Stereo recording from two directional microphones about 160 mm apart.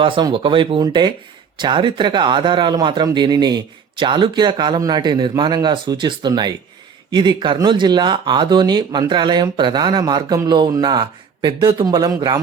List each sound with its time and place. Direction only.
0.0 s speech: 30° right (ahead or behind)